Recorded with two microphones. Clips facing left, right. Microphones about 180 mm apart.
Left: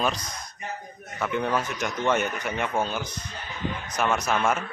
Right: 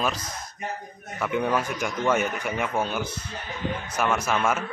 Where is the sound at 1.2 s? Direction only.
10° right (ahead or behind).